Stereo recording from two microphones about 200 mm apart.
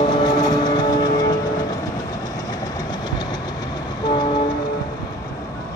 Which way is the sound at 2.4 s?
20° left (ahead or behind).